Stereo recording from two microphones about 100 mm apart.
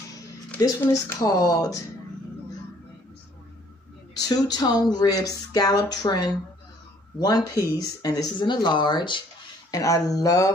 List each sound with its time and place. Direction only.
0.7 s speech: 20° left (ahead or behind)
1.2 s speech: 40° left (ahead or behind)
4.1 s speech: 40° left (ahead or behind)
9.7 s speech: 35° left (ahead or behind)